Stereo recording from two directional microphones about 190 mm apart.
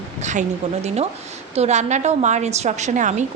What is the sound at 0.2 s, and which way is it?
Speech, 40° right (ahead or behind).